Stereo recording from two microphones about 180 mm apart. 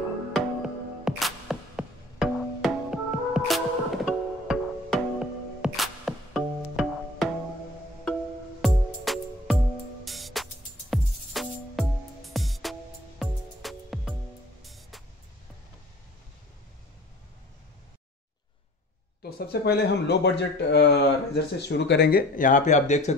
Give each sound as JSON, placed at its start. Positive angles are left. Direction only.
{"t": 0.3, "sound": "music", "side_deg": 0}
{"t": 8.5, "sound": "music", "side_deg": 0}
{"t": 19.3, "sound": "speech", "side_deg": 60}